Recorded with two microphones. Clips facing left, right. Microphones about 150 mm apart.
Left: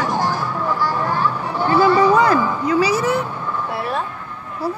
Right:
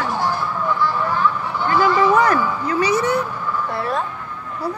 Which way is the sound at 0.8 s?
40° left (ahead or behind).